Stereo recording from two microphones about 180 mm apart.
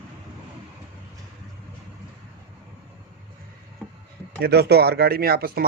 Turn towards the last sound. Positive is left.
turn(degrees=-55)  # may be behind; listen again after turning